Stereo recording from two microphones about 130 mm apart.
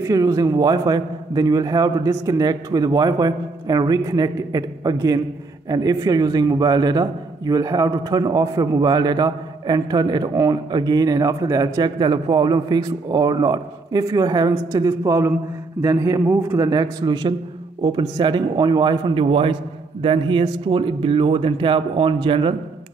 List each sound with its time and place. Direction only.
0.0 s a man's voice: 25° right (ahead or behind)
19.2 s a man's voice: 45° right (ahead or behind)